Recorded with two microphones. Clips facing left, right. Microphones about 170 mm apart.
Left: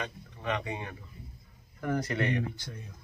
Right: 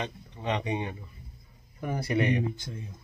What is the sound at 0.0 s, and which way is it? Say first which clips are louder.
Speech: right 2 dB; 20° right (ahead or behind).